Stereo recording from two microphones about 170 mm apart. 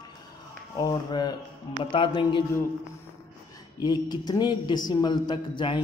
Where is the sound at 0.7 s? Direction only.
25° left (ahead or behind).